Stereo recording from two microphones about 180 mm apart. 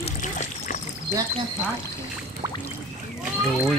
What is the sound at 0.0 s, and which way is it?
Splash, 45° left (ahead or behind).